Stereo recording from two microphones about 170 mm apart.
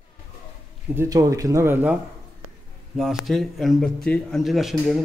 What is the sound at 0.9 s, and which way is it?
Speech, 20° right (ahead or behind).